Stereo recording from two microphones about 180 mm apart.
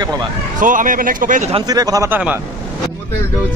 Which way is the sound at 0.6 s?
45° right (ahead or behind).